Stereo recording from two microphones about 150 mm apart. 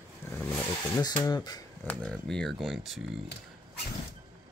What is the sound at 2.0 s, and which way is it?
Speech, 5° left (ahead or behind).